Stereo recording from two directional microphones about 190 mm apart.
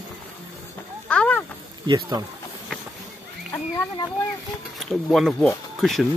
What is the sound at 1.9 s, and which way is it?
Speech, 20° right (ahead or behind).